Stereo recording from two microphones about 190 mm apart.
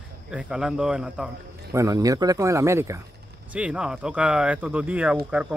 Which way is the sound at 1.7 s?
20° right (ahead or behind).